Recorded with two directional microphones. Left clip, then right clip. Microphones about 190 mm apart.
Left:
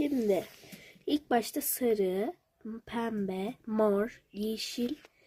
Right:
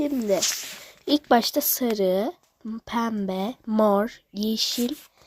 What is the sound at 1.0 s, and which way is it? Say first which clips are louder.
Speech: right 9 dB; 25° right (ahead or behind).